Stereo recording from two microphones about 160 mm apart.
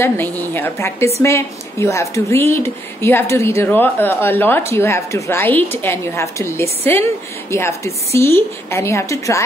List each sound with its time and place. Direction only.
0.0 s speech: 10° left (ahead or behind)